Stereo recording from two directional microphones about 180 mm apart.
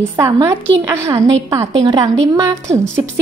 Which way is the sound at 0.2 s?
15° right (ahead or behind).